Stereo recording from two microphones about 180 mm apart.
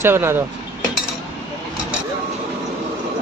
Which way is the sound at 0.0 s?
15° right (ahead or behind).